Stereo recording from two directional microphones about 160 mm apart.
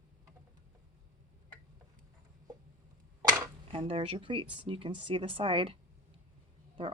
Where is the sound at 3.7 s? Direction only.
35° right (ahead or behind).